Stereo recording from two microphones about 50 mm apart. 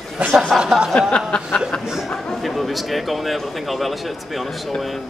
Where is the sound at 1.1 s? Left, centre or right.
Left.